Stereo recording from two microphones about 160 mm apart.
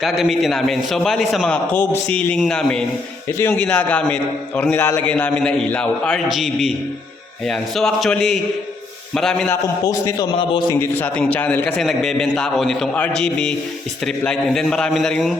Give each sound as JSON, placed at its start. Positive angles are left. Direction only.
{"t": 0.0, "sound": "a man's voice", "side_deg": 0}
{"t": 1.7, "sound": "a man's voice", "side_deg": 10}
{"t": 9.5, "sound": "a man's voice", "side_deg": 20}
{"t": 10.8, "sound": "a man's voice", "side_deg": 10}